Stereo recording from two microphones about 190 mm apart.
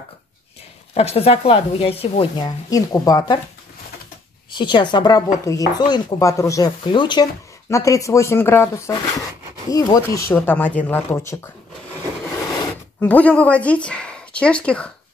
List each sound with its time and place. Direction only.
0.9 s speech: 35° left (ahead or behind)
4.6 s speech: 25° left (ahead or behind)
13.0 s speech: 10° left (ahead or behind)